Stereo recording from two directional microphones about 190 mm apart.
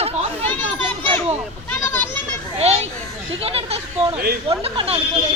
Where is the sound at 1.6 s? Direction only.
10° left (ahead or behind).